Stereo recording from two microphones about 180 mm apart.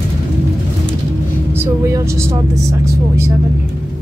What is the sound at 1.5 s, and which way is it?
Speech, 15° right (ahead or behind).